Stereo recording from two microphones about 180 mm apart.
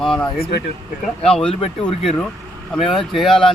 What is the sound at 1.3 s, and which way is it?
Speech, 5° left (ahead or behind).